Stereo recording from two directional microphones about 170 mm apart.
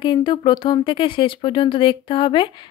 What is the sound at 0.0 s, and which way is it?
A woman's voice, 30° left (ahead or behind).